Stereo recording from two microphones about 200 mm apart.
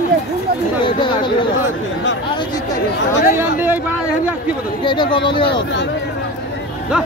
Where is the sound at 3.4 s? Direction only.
10° right (ahead or behind).